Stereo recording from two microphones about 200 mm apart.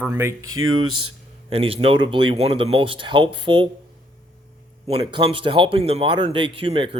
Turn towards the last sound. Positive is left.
turn(degrees=-25)  # may be behind; listen again after turning